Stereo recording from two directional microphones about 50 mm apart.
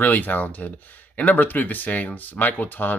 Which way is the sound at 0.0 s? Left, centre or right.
Left.